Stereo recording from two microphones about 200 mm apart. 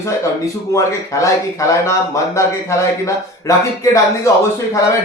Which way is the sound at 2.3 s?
15° left (ahead or behind).